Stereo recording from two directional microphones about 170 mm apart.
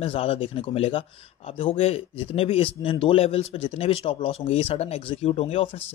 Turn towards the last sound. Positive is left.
turn(degrees=35)  # may be behind; listen again after turning